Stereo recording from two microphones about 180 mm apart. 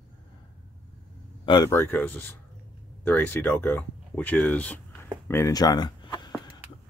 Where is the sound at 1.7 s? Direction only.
10° left (ahead or behind).